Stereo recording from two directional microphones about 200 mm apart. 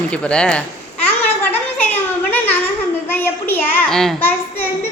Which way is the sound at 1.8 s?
10° left (ahead or behind).